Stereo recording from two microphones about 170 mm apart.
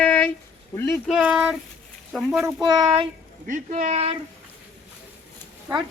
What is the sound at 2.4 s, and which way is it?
Speech, 25° right (ahead or behind).